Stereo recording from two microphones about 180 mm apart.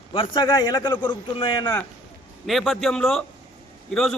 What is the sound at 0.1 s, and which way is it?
A man's voice, 25° left (ahead or behind).